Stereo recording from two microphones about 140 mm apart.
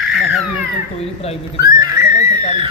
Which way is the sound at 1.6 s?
25° right (ahead or behind).